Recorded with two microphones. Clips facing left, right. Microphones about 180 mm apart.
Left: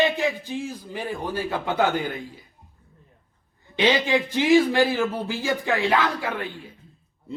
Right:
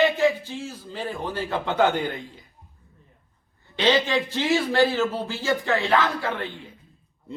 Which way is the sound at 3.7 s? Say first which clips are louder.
Left 1 dB; 15° left (ahead or behind).